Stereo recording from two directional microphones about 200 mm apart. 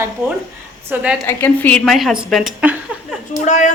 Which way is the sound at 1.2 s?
10° left (ahead or behind).